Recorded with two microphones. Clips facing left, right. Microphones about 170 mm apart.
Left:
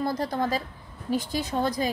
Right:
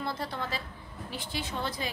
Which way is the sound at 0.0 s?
40° left (ahead or behind).